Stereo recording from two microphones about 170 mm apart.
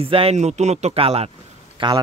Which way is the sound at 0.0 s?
35° right (ahead or behind).